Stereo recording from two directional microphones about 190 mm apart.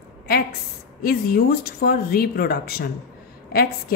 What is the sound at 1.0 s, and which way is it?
A woman's voice, 55° left (ahead or behind).